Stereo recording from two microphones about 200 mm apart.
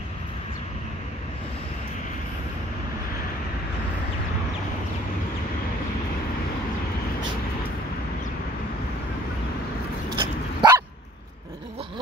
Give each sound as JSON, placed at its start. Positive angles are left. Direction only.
{"t": 10.1, "sound": "dog", "side_deg": -20}